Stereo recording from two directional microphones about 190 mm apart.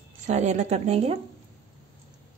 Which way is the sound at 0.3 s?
35° right (ahead or behind).